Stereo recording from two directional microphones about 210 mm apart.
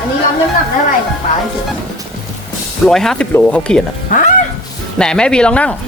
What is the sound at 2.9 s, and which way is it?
Speech, centre (ahead or behind).